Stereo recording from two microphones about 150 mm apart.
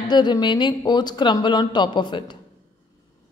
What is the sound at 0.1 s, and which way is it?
Speech, 30° left (ahead or behind).